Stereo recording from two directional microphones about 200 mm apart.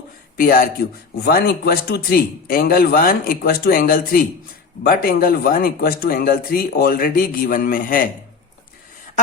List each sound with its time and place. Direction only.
0.3 s a man's voice: 45° left (ahead or behind)